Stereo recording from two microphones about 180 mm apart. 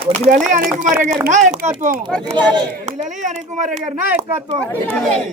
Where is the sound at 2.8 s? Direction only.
45° right (ahead or behind).